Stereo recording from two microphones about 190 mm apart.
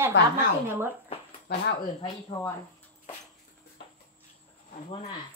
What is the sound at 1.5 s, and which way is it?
Speech, 55° left (ahead or behind).